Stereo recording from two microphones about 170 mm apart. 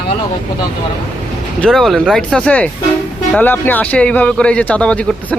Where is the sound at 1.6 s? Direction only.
Centre (ahead or behind).